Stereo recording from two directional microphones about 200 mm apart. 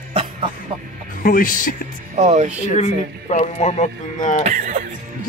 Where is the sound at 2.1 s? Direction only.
35° right (ahead or behind).